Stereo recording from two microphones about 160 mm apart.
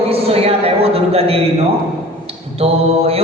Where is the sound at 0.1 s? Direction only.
40° right (ahead or behind).